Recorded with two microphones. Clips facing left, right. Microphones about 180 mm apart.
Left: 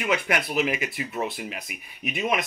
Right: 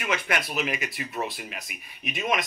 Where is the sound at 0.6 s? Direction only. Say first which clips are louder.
Left 4 dB; 20° left (ahead or behind).